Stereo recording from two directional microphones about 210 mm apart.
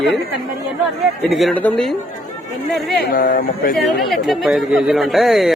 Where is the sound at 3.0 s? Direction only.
45° left (ahead or behind).